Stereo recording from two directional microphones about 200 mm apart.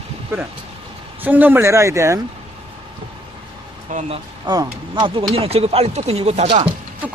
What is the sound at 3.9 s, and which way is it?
Speech, 40° right (ahead or behind).